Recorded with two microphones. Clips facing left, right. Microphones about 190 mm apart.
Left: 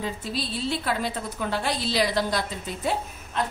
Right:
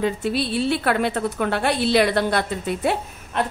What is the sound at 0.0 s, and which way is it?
A woman's voice, 65° right (ahead or behind).